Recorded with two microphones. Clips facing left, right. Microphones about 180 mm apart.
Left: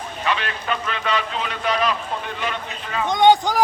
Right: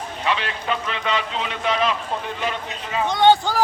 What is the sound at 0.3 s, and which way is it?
A man's voice, 25° right (ahead or behind).